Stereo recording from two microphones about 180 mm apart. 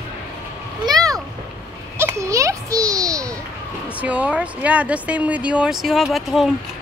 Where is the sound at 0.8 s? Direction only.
20° right (ahead or behind).